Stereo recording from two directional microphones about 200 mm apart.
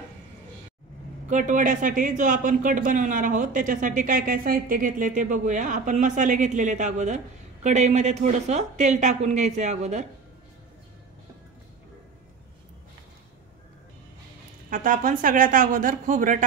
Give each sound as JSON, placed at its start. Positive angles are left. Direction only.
{"t": 1.3, "sound": "speech", "side_deg": -40}
{"t": 14.7, "sound": "speech", "side_deg": -45}